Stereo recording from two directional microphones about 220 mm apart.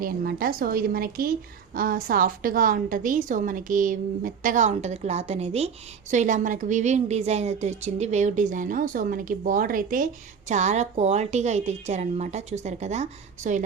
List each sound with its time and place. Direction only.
0.0 s a woman's voice: 40° right (ahead or behind)